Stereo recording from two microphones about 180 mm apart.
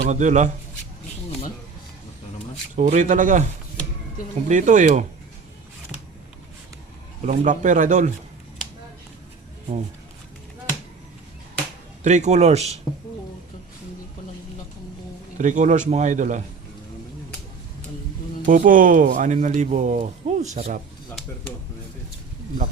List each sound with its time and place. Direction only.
0.0 s speech: 40° right (ahead or behind)
2.7 s speech: 40° right (ahead or behind)
4.4 s speech: 45° right (ahead or behind)
7.2 s speech: 45° right (ahead or behind)
12.0 s speech: 40° right (ahead or behind)
15.4 s speech: 45° right (ahead or behind)
18.4 s speech: 45° right (ahead or behind)